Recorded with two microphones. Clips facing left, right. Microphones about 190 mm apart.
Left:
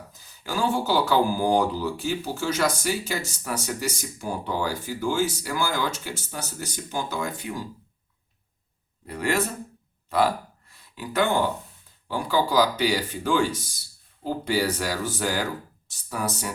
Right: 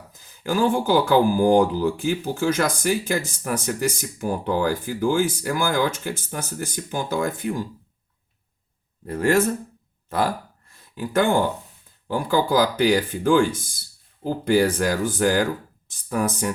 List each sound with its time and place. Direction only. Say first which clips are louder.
0.1 s speech: right 7 dB; 55° right (ahead or behind)
9.0 s speech: right 6 dB; 45° right (ahead or behind)
10.1 s a sound: left 1 dB; 45° right (ahead or behind)
12.0 s speech: right 3 dB; 50° right (ahead or behind)